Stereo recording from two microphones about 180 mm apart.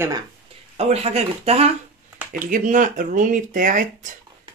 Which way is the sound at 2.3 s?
45° right (ahead or behind).